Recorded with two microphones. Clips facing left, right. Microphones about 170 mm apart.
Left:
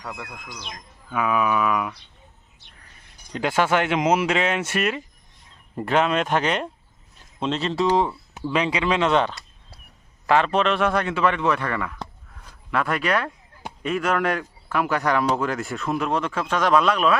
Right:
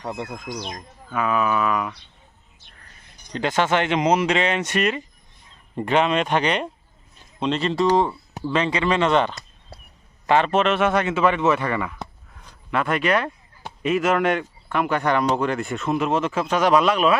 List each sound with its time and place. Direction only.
0.0 s speech: 30° right (ahead or behind)
0.5 s speech: 45° right (ahead or behind)
1.1 s speech: 10° left (ahead or behind)
3.3 s speech: 10° left (ahead or behind)